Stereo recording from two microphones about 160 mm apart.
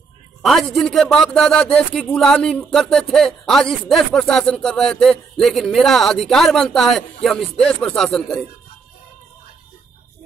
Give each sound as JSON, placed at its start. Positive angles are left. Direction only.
{"t": 0.4, "sound": "speech", "side_deg": 0}